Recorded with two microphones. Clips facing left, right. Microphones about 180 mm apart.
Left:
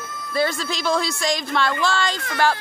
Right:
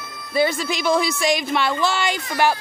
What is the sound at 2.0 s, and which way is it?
Speech, 15° right (ahead or behind).